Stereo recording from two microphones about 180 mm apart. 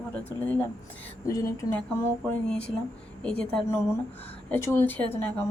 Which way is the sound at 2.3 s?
5° left (ahead or behind).